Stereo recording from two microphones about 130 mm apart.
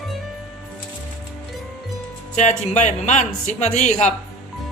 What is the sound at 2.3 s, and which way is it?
Speech, 65° left (ahead or behind).